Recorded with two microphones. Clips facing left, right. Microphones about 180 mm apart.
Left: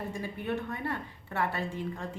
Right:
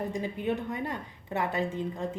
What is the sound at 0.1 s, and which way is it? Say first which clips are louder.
A woman's voice: right 3 dB; 15° right (ahead or behind).